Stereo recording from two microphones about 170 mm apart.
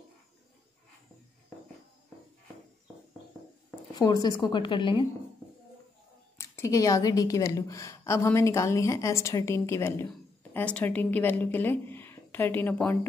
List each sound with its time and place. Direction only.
3.9 s a woman's voice: 20° left (ahead or behind)
6.3 s a woman's voice: 15° left (ahead or behind)